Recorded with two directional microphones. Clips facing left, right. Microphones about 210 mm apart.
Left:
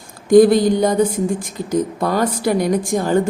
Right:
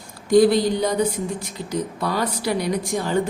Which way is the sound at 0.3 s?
50° left (ahead or behind).